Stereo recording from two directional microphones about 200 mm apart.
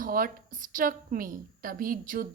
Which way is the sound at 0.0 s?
45° right (ahead or behind).